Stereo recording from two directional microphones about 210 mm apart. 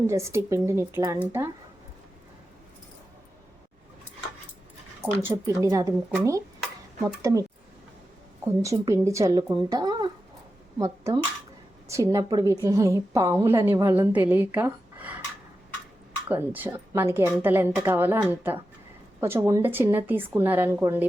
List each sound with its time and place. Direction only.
0.1 s a woman's voice: 15° right (ahead or behind)
5.2 s a woman's voice: 10° right (ahead or behind)
8.6 s a woman's voice: 15° right (ahead or behind)
16.3 s a woman's voice: 10° right (ahead or behind)